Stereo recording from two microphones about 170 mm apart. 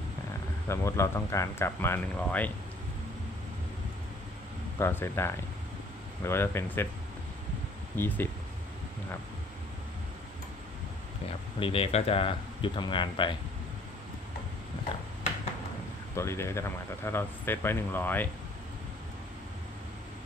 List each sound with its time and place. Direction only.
0.7 s speech: 15° left (ahead or behind)
4.7 s speech: 15° left (ahead or behind)
7.9 s speech: 15° left (ahead or behind)
11.6 s speech: 35° left (ahead or behind)
16.2 s speech: 15° left (ahead or behind)